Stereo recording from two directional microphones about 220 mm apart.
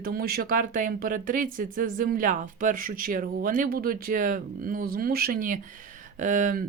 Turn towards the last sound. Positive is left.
turn(degrees=-40)  # may be behind; listen again after turning